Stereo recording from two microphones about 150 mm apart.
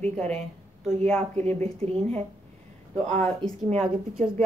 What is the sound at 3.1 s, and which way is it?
Speech, 45° right (ahead or behind).